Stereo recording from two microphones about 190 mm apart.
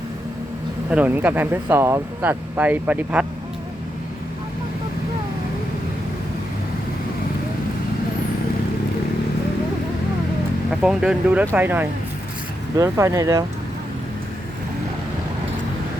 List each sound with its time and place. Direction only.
0.9 s speech: 10° right (ahead or behind)
10.7 s speech: 5° right (ahead or behind)